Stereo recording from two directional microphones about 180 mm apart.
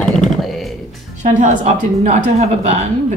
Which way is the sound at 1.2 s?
45° right (ahead or behind).